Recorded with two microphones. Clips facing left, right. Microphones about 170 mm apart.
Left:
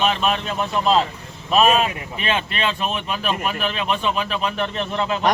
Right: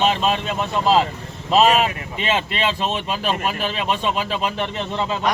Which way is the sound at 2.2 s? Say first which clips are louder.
Right 2 dB; 20° right (ahead or behind).